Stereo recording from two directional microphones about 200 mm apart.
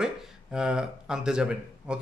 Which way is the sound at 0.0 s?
5° right (ahead or behind).